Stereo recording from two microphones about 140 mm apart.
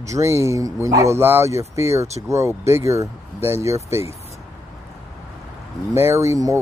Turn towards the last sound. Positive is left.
turn(degrees=-20)  # may be behind; listen again after turning